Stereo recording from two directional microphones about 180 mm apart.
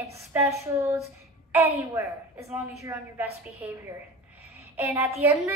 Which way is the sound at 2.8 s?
15° right (ahead or behind).